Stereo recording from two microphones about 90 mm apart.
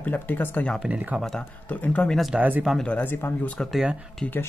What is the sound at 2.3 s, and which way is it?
Speech, 15° right (ahead or behind).